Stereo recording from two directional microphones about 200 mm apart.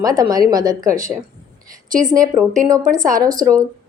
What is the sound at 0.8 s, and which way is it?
Speech, 40° right (ahead or behind).